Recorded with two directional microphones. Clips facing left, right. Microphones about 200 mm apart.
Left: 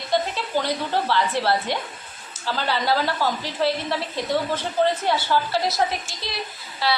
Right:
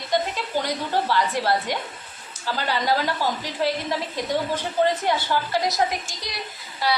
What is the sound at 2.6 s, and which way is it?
A woman's voice, 15° right (ahead or behind).